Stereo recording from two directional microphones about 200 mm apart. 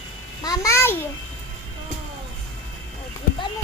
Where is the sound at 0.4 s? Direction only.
15° left (ahead or behind).